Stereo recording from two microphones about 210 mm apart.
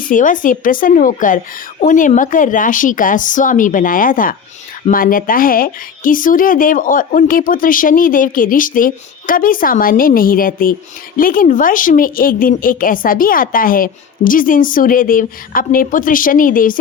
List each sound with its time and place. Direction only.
0.1 s speech: 40° left (ahead or behind)